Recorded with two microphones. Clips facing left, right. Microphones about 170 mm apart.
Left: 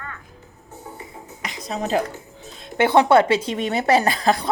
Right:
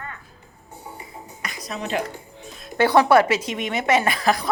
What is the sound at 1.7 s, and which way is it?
Speech, 40° left (ahead or behind).